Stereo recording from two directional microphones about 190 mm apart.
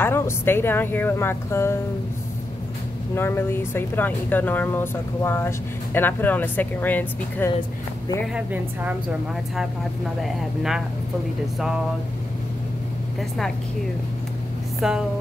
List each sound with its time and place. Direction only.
0.0 s speech: 10° left (ahead or behind)
3.2 s speech: 10° left (ahead or behind)
8.3 s speech: 5° right (ahead or behind)
14.8 s speech: 5° right (ahead or behind)